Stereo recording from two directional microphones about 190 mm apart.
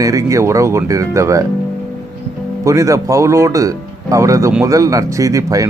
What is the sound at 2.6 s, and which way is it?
Speech, 15° right (ahead or behind).